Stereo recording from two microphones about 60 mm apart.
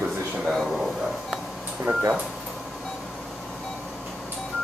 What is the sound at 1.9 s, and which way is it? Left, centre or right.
Speech, right.